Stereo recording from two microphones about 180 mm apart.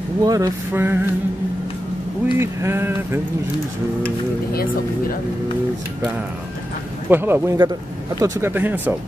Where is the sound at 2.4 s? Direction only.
15° right (ahead or behind).